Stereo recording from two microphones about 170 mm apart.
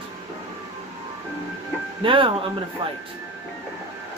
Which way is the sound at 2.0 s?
30° right (ahead or behind).